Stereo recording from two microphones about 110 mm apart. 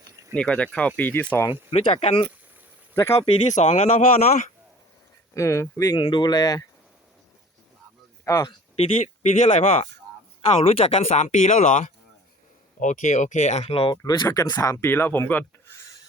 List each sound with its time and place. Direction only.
0.3 s speech: 10° left (ahead or behind)
1.8 s speech: 60° left (ahead or behind)
2.9 s speech: 25° left (ahead or behind)
3.4 s speech: 90° left
5.3 s speech: 25° left (ahead or behind)
6.0 s speech: 45° left (ahead or behind)
8.2 s speech: 25° left (ahead or behind)
8.7 s speech: 80° left
9.5 s speech: 60° left (ahead or behind); by 11.9 s 90° left
12.9 s speech: 90° left; by 13.9 s 60° left (ahead or behind)
13.9 s speech: 40° left (ahead or behind)
14.6 s speech: 25° left (ahead or behind)
15.7 s a sound: 25° left (ahead or behind)